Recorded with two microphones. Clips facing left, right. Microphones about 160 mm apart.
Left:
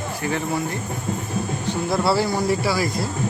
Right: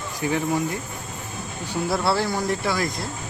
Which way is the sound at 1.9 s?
Centre (ahead or behind).